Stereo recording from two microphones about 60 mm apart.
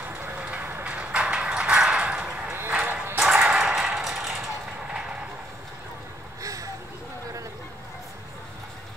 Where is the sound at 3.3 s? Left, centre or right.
Centre.